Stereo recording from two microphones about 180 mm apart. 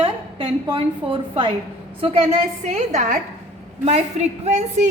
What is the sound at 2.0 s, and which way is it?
A woman's voice, 40° right (ahead or behind).